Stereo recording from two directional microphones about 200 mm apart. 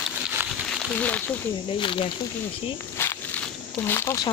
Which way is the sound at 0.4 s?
10° right (ahead or behind).